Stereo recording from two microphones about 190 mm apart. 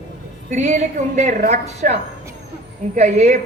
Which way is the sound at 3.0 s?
40° right (ahead or behind).